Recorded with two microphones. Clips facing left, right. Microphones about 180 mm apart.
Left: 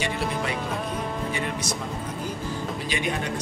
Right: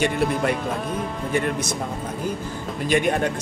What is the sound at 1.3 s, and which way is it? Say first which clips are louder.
Speech: right 6 dB; 50° right (ahead or behind).